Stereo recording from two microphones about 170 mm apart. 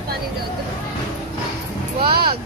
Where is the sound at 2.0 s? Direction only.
65° right (ahead or behind).